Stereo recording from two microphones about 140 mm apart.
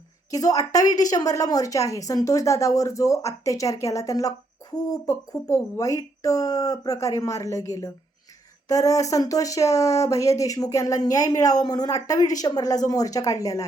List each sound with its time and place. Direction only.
0.3 s a woman's voice: 25° left (ahead or behind)